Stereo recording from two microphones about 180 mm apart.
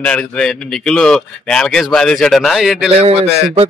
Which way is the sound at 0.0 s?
5° left (ahead or behind).